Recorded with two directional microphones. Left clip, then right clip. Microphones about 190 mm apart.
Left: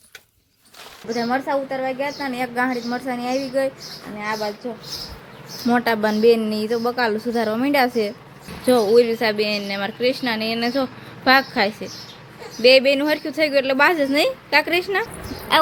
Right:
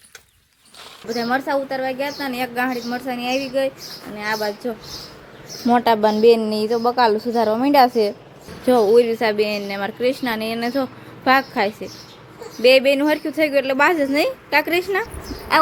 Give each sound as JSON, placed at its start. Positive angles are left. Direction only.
{"t": 1.0, "sound": "a woman's voice", "side_deg": -5}
{"t": 4.2, "sound": "a woman's voice", "side_deg": -20}
{"t": 5.6, "sound": "a woman's voice", "side_deg": -15}